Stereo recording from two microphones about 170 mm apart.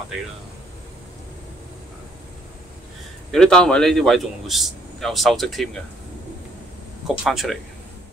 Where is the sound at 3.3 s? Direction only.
5° left (ahead or behind).